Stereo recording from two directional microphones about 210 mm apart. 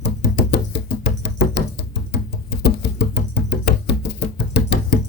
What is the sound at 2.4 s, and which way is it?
Music, 50° left (ahead or behind).